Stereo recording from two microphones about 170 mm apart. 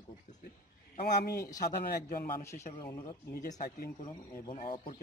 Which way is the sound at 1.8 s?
60° left (ahead or behind).